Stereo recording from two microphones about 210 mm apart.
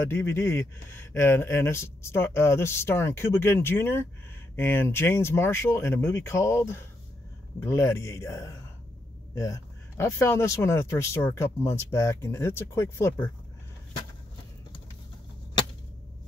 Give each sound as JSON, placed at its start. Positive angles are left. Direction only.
{"t": 0.0, "sound": "speech", "side_deg": 10}